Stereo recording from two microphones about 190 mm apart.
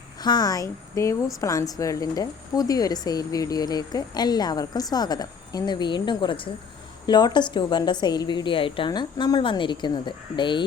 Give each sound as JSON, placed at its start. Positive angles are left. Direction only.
{"t": 0.2, "sound": "speech", "side_deg": 20}